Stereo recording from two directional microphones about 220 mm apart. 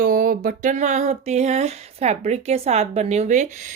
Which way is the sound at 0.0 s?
40° right (ahead or behind).